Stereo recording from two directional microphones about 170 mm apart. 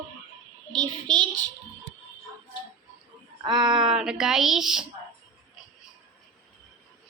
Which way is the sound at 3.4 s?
25° right (ahead or behind).